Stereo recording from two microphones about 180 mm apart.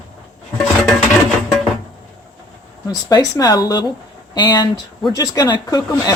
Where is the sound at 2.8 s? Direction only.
20° left (ahead or behind).